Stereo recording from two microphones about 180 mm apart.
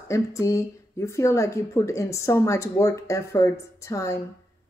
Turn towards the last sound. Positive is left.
turn(degrees=15)  # may be behind; listen again after turning